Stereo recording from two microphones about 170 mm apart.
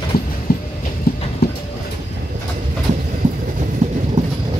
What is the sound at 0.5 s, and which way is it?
Train, 65° left (ahead or behind).